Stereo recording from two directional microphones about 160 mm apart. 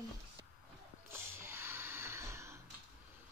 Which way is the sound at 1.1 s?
15° right (ahead or behind).